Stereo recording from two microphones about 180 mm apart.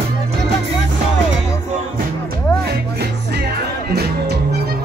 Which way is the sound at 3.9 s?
65° right (ahead or behind).